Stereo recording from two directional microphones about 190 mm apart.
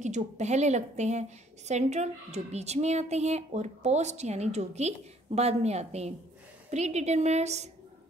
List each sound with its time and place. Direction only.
0.0 s speech: 40° right (ahead or behind)